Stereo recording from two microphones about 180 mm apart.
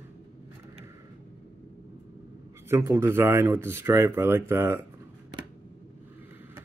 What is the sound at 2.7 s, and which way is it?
Speech, 15° right (ahead or behind).